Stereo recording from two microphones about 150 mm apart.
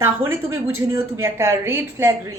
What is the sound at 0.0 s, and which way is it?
Speech, 20° right (ahead or behind).